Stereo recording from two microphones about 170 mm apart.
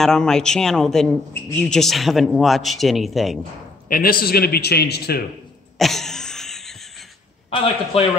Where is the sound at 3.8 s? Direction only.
55° left (ahead or behind).